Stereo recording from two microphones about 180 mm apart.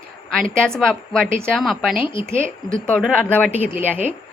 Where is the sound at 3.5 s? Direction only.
10° right (ahead or behind).